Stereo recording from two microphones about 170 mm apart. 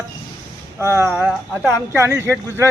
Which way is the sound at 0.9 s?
15° right (ahead or behind).